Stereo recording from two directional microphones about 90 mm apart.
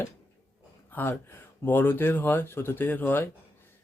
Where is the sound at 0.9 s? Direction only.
20° left (ahead or behind).